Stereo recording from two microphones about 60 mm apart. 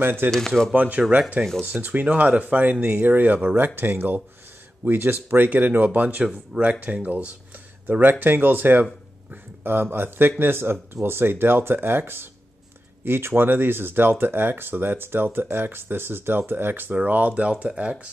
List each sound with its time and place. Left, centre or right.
0.0 s speech: right
0.7 s speech: right
6.2 s speech: centre
6.6 s speech: right